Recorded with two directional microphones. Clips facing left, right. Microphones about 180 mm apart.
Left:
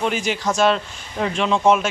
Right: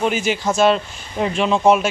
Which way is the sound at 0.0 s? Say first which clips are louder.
Right 2 dB; 5° right (ahead or behind).